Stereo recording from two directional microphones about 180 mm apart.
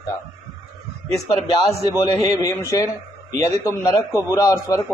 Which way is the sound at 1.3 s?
30° left (ahead or behind).